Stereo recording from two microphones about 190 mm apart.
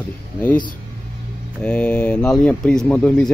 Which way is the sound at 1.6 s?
5° left (ahead or behind).